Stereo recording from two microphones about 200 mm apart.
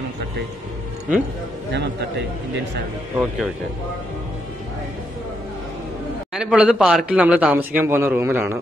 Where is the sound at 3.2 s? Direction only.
5° right (ahead or behind).